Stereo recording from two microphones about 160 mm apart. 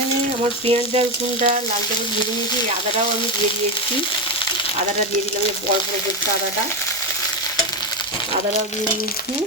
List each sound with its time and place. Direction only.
0.7 s frying: 45° right (ahead or behind)